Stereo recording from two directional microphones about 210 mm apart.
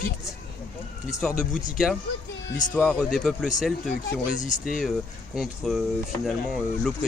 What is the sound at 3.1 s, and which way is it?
Speech, centre (ahead or behind).